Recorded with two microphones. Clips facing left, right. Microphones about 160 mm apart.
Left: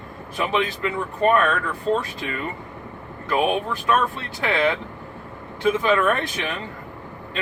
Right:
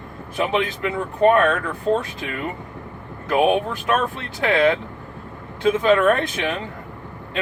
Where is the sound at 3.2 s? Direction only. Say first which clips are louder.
Right 3 dB; 20° right (ahead or behind).